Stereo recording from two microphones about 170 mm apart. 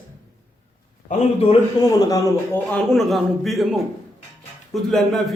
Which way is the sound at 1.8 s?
20° left (ahead or behind).